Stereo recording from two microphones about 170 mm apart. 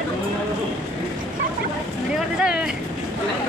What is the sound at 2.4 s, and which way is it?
Vehicle, 5° right (ahead or behind).